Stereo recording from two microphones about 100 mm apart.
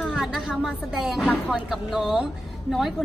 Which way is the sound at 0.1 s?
10° right (ahead or behind).